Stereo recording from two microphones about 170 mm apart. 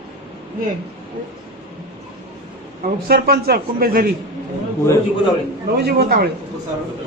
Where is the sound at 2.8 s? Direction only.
65° right (ahead or behind).